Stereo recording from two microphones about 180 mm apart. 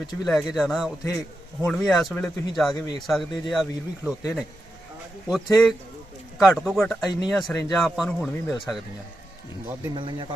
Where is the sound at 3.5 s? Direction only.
Centre (ahead or behind).